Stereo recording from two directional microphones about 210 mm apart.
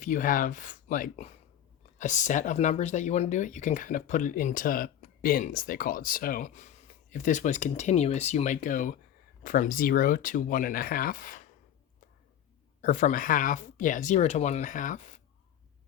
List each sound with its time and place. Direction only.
0.0 s speech: 40° left (ahead or behind)
12.8 s speech: 35° left (ahead or behind)